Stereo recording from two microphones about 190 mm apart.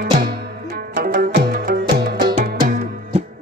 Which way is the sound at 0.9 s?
50° right (ahead or behind).